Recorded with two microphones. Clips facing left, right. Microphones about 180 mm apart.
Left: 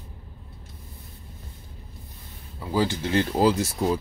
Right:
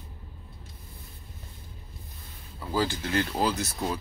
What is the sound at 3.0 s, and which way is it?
Speech, 30° left (ahead or behind).